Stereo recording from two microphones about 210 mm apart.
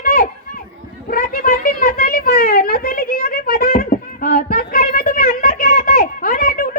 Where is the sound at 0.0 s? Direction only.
45° left (ahead or behind).